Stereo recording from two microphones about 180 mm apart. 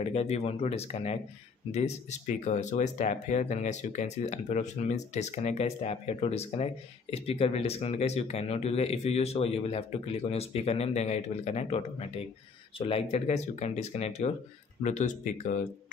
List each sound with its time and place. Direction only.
0.0 s speech: 35° left (ahead or behind)